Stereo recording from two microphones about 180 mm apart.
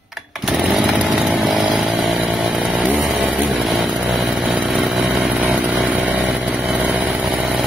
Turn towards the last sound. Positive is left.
turn(degrees=-5)  # may be behind; listen again after turning